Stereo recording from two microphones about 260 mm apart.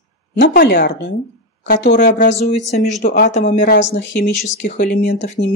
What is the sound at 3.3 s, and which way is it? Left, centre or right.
Speech, left.